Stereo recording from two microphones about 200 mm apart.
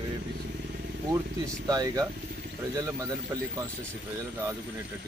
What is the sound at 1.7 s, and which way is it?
Speech, 20° right (ahead or behind).